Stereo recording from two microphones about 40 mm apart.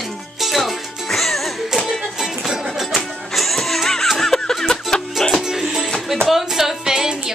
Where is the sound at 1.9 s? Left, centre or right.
Centre.